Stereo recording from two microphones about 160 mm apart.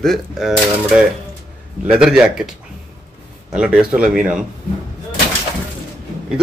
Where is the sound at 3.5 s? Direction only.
5° right (ahead or behind).